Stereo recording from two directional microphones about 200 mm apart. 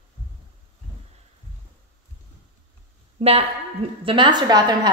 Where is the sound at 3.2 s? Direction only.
30° right (ahead or behind).